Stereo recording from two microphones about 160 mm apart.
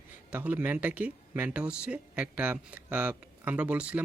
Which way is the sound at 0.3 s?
10° right (ahead or behind).